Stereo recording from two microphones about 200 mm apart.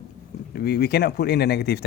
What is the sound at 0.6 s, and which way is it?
Speech, 55° left (ahead or behind).